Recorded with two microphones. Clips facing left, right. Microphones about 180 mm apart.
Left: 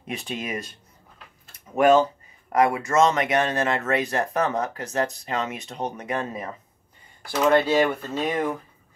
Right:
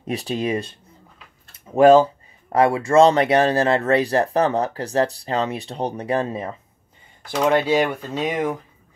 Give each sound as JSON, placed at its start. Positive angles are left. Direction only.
{"t": 0.0, "sound": "speech", "side_deg": -35}
{"t": 1.8, "sound": "speech", "side_deg": -30}
{"t": 7.2, "sound": "speech", "side_deg": -15}